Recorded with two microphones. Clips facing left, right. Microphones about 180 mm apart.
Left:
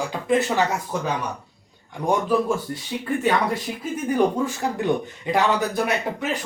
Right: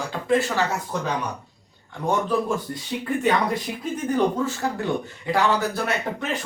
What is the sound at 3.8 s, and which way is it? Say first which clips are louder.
A man's voice: left 2 dB; 10° left (ahead or behind).